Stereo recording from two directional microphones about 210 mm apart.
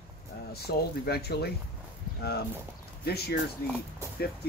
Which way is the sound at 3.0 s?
50° left (ahead or behind).